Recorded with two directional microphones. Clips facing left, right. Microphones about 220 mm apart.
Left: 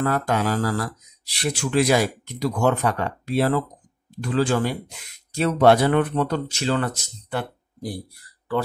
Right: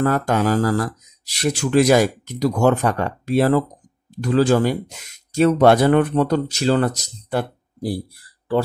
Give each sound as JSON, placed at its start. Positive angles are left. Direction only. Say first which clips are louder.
{"t": 0.0, "sound": "speech", "louder": "right 4 dB", "side_deg": -45}